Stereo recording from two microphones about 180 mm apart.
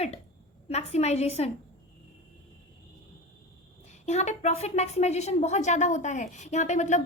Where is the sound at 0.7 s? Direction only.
35° left (ahead or behind).